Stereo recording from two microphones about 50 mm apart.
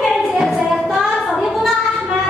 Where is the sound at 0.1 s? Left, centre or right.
Centre.